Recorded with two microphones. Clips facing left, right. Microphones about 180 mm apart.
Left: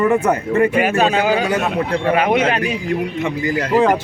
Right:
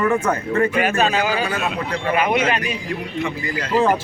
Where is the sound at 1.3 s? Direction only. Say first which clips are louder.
Left 5 dB; 60° left (ahead or behind).